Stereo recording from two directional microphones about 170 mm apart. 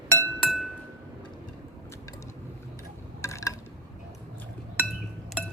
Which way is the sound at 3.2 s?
20° left (ahead or behind).